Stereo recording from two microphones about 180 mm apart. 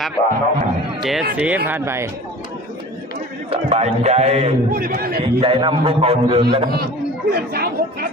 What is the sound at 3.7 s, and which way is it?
A man's voice, 35° right (ahead or behind).